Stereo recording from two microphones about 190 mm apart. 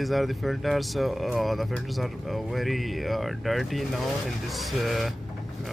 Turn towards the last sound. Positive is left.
turn(degrees=0)  # may be behind; listen again after turning